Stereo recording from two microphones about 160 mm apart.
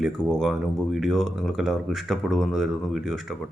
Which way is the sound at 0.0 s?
Centre (ahead or behind).